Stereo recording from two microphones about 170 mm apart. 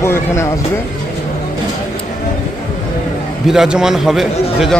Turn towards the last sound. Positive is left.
turn(degrees=0)  # may be behind; listen again after turning